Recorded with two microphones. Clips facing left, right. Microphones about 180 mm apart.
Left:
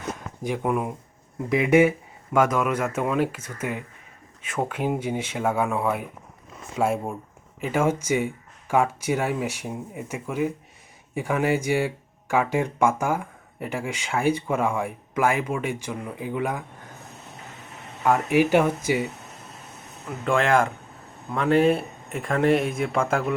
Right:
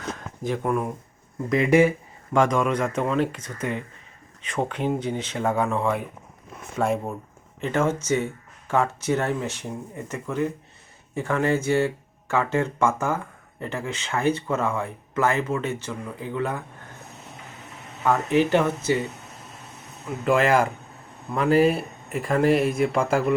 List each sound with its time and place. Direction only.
0.4 s speech: 15° left (ahead or behind)
1.5 s speech: 5° left (ahead or behind)
18.0 s speech: 10° left (ahead or behind)
20.2 s speech: 5° right (ahead or behind)